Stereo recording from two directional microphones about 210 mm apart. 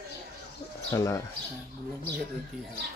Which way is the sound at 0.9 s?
15° left (ahead or behind).